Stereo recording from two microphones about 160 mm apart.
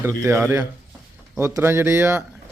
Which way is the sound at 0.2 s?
15° right (ahead or behind).